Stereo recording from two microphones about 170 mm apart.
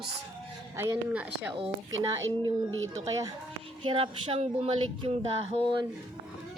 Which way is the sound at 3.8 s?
30° right (ahead or behind).